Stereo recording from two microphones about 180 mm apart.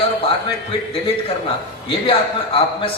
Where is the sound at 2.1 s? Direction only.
30° left (ahead or behind).